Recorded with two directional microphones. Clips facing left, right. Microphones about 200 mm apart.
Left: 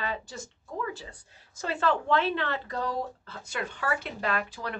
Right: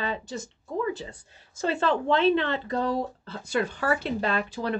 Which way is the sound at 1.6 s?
25° right (ahead or behind).